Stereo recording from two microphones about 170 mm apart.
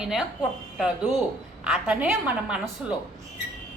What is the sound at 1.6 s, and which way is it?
A woman's voice, 5° right (ahead or behind).